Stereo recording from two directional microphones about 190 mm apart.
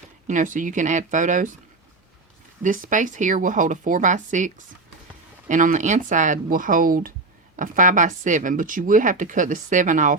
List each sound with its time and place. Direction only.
0.3 s speech: 40° right (ahead or behind)
2.6 s speech: 45° right (ahead or behind)